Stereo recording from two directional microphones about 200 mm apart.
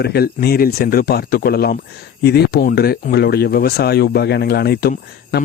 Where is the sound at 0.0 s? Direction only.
50° left (ahead or behind).